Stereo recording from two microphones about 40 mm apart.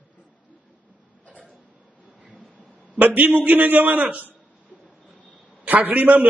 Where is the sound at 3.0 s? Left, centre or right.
Right.